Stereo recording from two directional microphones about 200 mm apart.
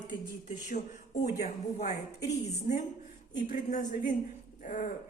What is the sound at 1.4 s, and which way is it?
Speech, 45° left (ahead or behind).